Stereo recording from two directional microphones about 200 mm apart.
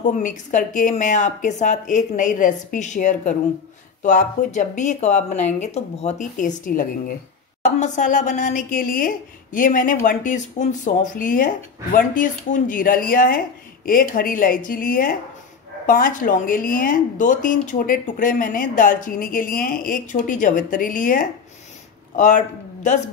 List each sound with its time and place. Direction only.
0.1 s a woman's voice: 40° left (ahead or behind)